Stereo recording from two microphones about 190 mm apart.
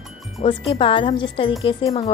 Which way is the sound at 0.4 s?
30° left (ahead or behind).